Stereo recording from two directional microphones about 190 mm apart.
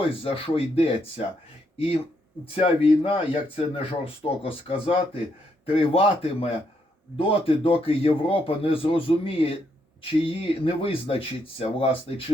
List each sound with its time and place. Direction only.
0.0 s speech: 30° left (ahead or behind)
3.0 s speech: 30° left (ahead or behind)